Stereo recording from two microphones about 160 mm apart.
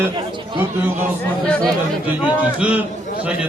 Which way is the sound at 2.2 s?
10° right (ahead or behind).